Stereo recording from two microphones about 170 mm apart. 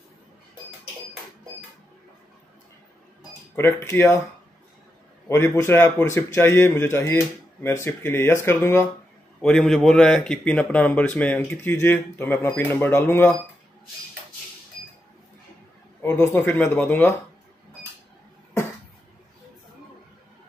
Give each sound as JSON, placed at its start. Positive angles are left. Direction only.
{"t": 3.5, "sound": "speech", "side_deg": 15}
{"t": 5.3, "sound": "speech", "side_deg": 15}
{"t": 9.4, "sound": "speech", "side_deg": 5}
{"t": 16.0, "sound": "speech", "side_deg": 10}